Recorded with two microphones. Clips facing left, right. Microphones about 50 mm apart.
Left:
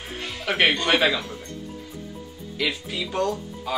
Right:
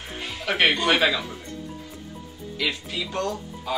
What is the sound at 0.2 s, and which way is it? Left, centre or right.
Speech, centre.